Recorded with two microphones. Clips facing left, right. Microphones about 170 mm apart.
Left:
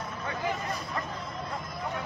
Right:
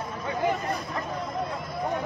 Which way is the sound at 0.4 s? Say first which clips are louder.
Right 7 dB; 60° right (ahead or behind).